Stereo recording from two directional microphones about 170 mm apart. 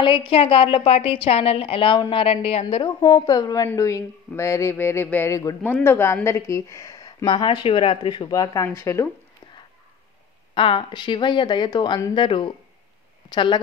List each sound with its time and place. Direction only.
0.0 s a woman's voice: 30° left (ahead or behind)
10.5 s a woman's voice: 30° left (ahead or behind)